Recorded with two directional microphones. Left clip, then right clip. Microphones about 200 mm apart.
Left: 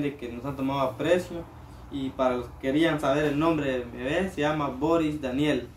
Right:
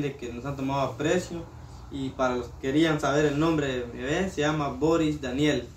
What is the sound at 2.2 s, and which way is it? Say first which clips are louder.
A man's voice: left 1 dB; 15° left (ahead or behind).